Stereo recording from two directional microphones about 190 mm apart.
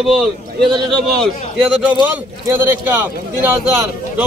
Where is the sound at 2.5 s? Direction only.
10° right (ahead or behind).